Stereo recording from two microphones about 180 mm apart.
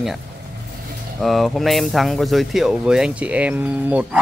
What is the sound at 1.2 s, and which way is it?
Speech, centre (ahead or behind).